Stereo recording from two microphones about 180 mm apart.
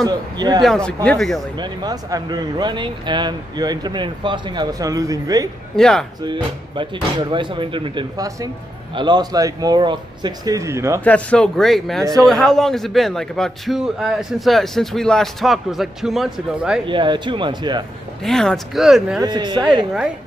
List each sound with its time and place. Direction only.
0.0 s speech: 25° right (ahead or behind)
0.6 s a man's voice: 5° left (ahead or behind)
1.6 s speech: 20° right (ahead or behind)
5.8 s a man's voice: 5° left (ahead or behind)
6.2 s speech: 25° right (ahead or behind)
11.1 s a man's voice: 10° left (ahead or behind)
12.0 s speech: 20° right (ahead or behind)
12.3 s a man's voice: centre (ahead or behind)
16.8 s speech: 25° right (ahead or behind)
18.2 s a man's voice: centre (ahead or behind)
19.2 s speech: 25° right (ahead or behind)